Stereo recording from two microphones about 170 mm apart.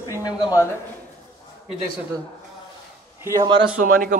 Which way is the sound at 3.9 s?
55° right (ahead or behind).